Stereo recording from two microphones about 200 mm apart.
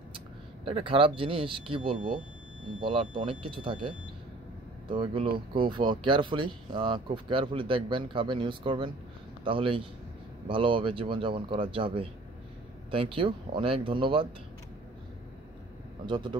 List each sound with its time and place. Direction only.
0.7 s speech: 25° right (ahead or behind)
16.1 s speech: 25° right (ahead or behind)